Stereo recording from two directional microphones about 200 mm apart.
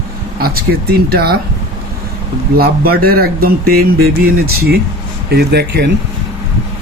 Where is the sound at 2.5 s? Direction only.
50° right (ahead or behind).